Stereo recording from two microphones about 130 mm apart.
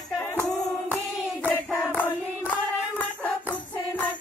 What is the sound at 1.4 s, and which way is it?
Hands, 15° left (ahead or behind).